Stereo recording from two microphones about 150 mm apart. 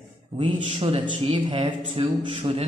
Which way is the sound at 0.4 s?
40° right (ahead or behind).